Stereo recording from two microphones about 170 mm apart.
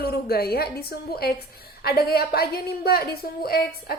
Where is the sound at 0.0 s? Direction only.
65° left (ahead or behind).